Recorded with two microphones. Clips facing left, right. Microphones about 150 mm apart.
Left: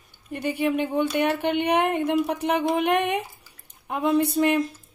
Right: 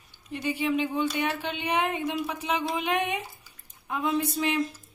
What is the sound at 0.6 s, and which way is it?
A woman's voice, 55° left (ahead or behind).